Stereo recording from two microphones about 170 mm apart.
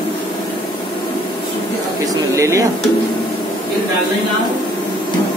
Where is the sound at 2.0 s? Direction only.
20° right (ahead or behind).